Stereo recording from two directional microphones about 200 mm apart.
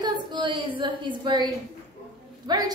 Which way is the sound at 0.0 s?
20° right (ahead or behind).